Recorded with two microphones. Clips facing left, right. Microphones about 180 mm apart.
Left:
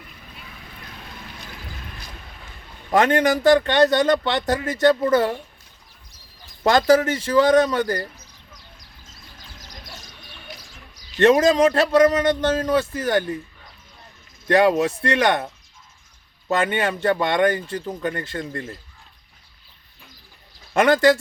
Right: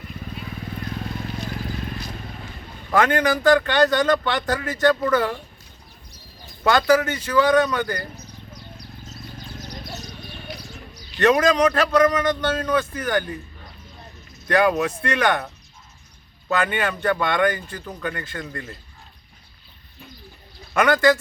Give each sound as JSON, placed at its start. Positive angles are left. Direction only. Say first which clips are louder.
{"t": 2.9, "sound": "speech", "louder": "left 2 dB", "side_deg": 25}
{"t": 6.7, "sound": "speech", "louder": "left 2 dB", "side_deg": 30}
{"t": 8.2, "sound": "a sound", "louder": "right 8 dB", "side_deg": 90}
{"t": 11.2, "sound": "speech", "louder": "left 2 dB", "side_deg": 25}
{"t": 14.4, "sound": "speech", "louder": "left 2 dB", "side_deg": 25}
{"t": 16.5, "sound": "speech", "louder": "left 1 dB", "side_deg": 25}
{"t": 20.7, "sound": "speech", "louder": "left 2 dB", "side_deg": 30}